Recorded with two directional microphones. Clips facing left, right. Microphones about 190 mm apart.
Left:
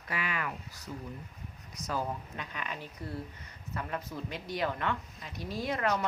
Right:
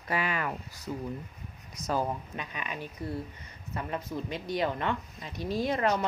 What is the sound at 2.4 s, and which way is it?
Speech, 15° right (ahead or behind).